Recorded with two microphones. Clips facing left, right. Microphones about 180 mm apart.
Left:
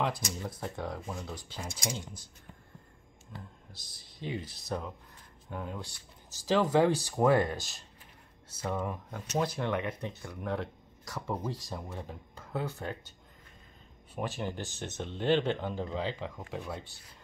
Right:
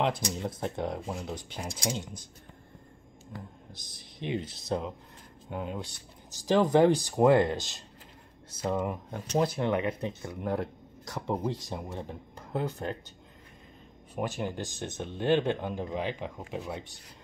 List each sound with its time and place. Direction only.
0.3 s speech: 25° right (ahead or behind)
3.7 s speech: 20° right (ahead or behind)
14.4 s speech: 15° right (ahead or behind)